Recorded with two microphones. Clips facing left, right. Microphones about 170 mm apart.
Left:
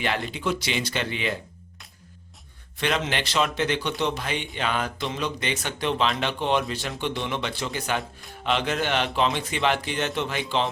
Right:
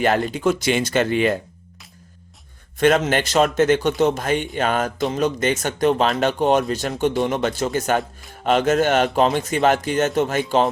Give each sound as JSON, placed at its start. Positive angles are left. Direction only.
{"t": 0.0, "sound": "speech", "side_deg": -45}
{"t": 2.7, "sound": "speech", "side_deg": -45}